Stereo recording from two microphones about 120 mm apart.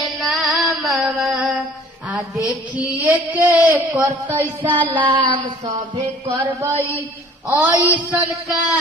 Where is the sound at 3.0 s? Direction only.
15° right (ahead or behind).